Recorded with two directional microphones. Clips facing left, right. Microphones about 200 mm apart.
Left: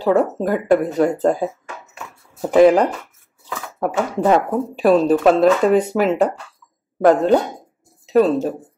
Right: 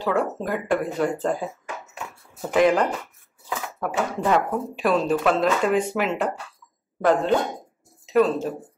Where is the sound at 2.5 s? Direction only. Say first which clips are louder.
Left 7 dB; 35° left (ahead or behind).